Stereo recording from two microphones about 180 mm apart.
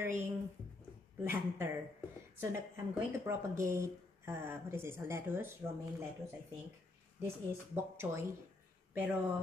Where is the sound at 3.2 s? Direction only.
15° right (ahead or behind).